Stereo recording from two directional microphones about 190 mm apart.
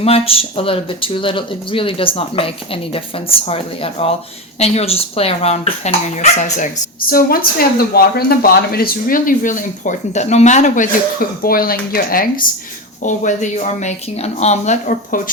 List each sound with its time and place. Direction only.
0.0 s speech: 30° left (ahead or behind)
7.1 s speech: 50° left (ahead or behind)
11.4 s speech: 50° left (ahead or behind)